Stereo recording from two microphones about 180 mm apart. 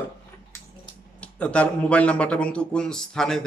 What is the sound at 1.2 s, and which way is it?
Speech, 5° left (ahead or behind).